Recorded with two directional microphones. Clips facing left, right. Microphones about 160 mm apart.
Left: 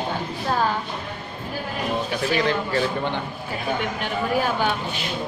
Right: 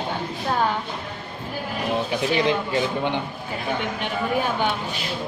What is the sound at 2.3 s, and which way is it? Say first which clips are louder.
Speech: even; 15° right (ahead or behind).